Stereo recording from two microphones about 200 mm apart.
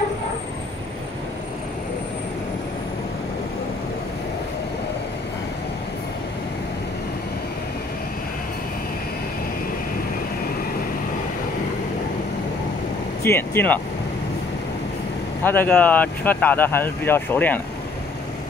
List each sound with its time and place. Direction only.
13.2 s speech: 10° left (ahead or behind)
15.4 s speech: 10° left (ahead or behind)